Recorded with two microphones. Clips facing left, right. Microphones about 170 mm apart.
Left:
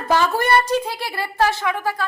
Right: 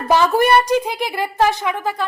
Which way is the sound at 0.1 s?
15° right (ahead or behind).